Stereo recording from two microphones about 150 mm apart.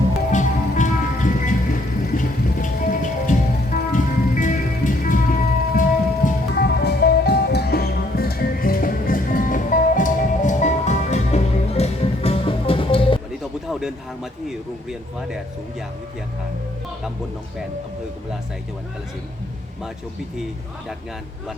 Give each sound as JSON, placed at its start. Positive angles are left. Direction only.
{"t": 0.3, "sound": "music", "side_deg": 55}
{"t": 6.2, "sound": "music", "side_deg": 90}
{"t": 13.7, "sound": "a sound", "side_deg": -5}